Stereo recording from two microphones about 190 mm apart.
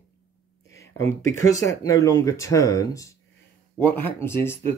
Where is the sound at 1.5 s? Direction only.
15° left (ahead or behind).